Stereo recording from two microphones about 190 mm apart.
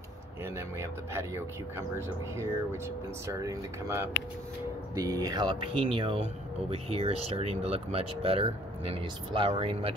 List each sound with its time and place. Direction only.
0.6 s speech: 15° right (ahead or behind)